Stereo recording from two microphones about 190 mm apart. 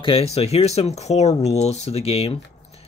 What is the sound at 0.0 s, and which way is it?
Speech, 30° left (ahead or behind).